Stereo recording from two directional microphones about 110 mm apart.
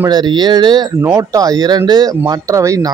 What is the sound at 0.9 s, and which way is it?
Speech, 30° right (ahead or behind).